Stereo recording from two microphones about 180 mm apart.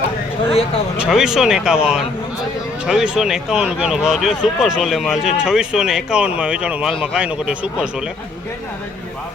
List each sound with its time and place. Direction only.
0.9 s speech: 5° right (ahead or behind)